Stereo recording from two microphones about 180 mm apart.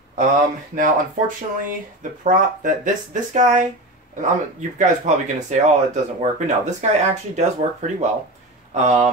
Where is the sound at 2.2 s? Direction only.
45° right (ahead or behind).